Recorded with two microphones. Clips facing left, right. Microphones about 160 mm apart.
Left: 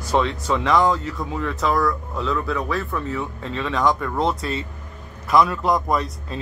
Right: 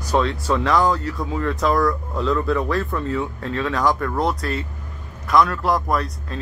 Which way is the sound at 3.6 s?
5° right (ahead or behind).